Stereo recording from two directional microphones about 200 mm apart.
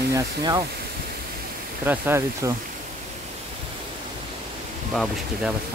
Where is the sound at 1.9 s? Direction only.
10° right (ahead or behind).